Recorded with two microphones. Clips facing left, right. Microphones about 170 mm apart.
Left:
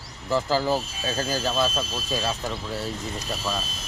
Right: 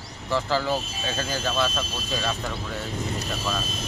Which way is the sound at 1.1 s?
35° left (ahead or behind).